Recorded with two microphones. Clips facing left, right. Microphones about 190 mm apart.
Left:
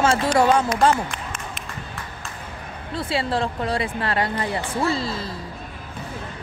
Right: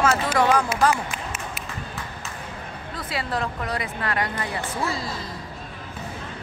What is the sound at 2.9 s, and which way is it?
A woman's voice, 30° left (ahead or behind).